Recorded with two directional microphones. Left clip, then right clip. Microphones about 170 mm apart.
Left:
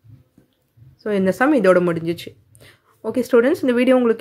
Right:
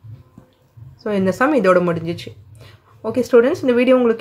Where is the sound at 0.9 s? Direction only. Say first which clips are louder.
Even; 30° left (ahead or behind).